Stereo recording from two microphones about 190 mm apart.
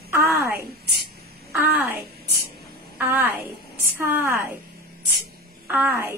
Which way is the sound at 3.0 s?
10° right (ahead or behind).